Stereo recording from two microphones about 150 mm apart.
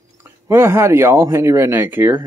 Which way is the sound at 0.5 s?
15° right (ahead or behind).